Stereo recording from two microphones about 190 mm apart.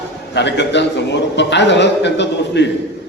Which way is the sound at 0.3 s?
65° left (ahead or behind).